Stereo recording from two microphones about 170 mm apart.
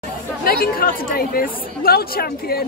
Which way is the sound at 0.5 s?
60° left (ahead or behind).